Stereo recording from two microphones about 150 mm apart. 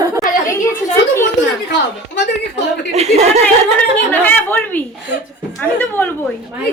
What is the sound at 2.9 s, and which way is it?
Speech, 45° right (ahead or behind).